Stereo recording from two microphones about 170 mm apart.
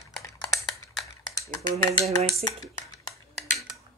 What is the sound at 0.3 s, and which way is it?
Typing, 20° left (ahead or behind).